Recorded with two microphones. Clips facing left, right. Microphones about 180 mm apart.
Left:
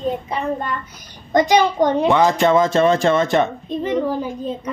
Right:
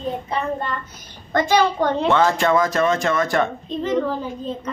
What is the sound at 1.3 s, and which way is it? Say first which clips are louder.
A child's voice: left 3 dB; 15° left (ahead or behind).